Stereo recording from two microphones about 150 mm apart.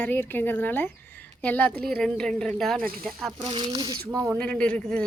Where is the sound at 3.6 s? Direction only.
25° right (ahead or behind).